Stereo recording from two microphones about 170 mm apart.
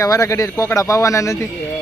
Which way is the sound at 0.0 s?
20° left (ahead or behind).